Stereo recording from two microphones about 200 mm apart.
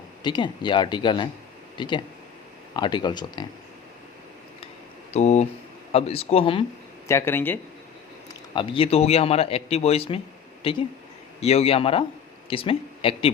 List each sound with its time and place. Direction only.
0.2 s a man's voice: 20° left (ahead or behind)
5.1 s a man's voice: 35° left (ahead or behind)
7.1 s speech: 15° left (ahead or behind)
8.3 s a man's voice: 25° left (ahead or behind)